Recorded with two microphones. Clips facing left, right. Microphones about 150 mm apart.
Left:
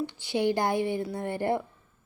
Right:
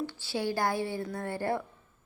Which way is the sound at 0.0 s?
20° left (ahead or behind).